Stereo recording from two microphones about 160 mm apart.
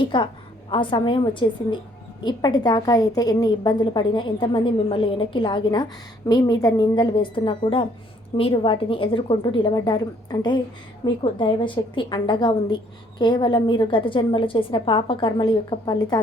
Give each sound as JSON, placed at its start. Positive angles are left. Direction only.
{"t": 0.0, "sound": "a woman's voice", "side_deg": 30}